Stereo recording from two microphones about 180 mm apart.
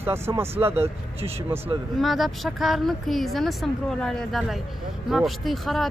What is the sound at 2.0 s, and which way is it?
Speech, centre (ahead or behind).